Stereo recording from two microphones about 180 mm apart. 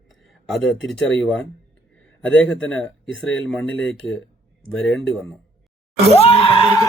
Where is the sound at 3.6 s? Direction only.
90° left.